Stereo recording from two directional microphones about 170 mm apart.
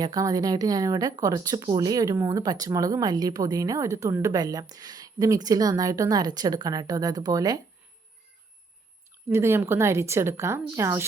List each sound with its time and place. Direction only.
0.0 s speech: 20° right (ahead or behind)
9.3 s speech: 15° right (ahead or behind)